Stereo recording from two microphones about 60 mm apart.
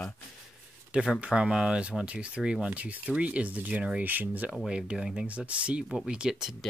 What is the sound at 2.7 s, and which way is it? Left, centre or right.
Speech, right.